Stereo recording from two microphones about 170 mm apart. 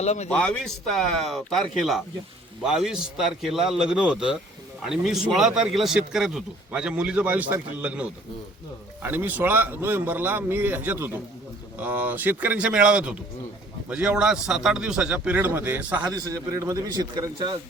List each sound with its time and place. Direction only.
0.0 s speech: 40° left (ahead or behind)
0.3 s a man's voice: 5° left (ahead or behind)
16.1 s a man's voice: 20° right (ahead or behind)